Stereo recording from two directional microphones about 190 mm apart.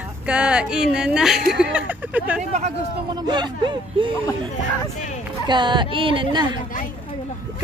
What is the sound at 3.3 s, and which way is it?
Speech, 25° right (ahead or behind).